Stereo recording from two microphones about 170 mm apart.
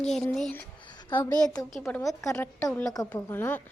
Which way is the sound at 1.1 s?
20° left (ahead or behind).